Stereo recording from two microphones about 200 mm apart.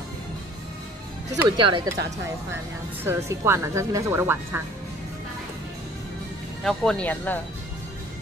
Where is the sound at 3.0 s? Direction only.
10° right (ahead or behind).